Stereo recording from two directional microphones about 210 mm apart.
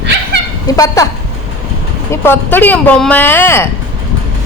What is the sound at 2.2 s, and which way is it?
Speech, 10° left (ahead or behind).